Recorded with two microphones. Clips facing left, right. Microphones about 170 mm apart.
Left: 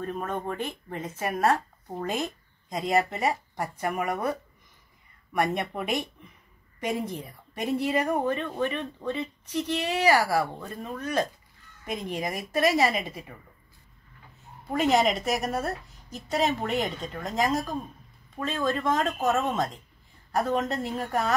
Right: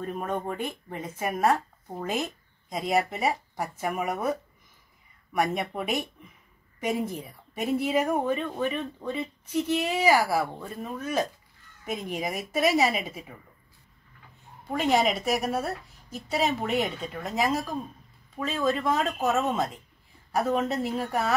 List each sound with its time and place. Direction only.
0.0 s a woman's voice: 10° right (ahead or behind)
5.3 s a woman's voice: 5° right (ahead or behind)
14.7 s a woman's voice: centre (ahead or behind)